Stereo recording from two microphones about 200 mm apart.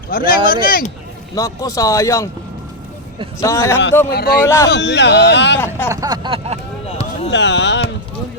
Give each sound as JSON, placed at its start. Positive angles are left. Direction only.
{"t": 0.1, "sound": "speech", "side_deg": 45}
{"t": 1.4, "sound": "a man's voice", "side_deg": 15}
{"t": 3.4, "sound": "a man's voice", "side_deg": 15}
{"t": 4.1, "sound": "speech", "side_deg": 50}
{"t": 4.4, "sound": "a man's voice", "side_deg": 15}
{"t": 4.7, "sound": "speech", "side_deg": 60}
{"t": 5.5, "sound": "a man's voice", "side_deg": 10}
{"t": 5.9, "sound": "a sound", "side_deg": -20}
{"t": 6.8, "sound": "a sound", "side_deg": 30}
{"t": 7.3, "sound": "speech", "side_deg": 60}